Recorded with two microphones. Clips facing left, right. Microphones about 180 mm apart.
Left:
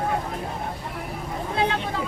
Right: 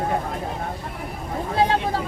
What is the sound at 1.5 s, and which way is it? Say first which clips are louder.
Hubbub: right 5 dB; 35° right (ahead or behind).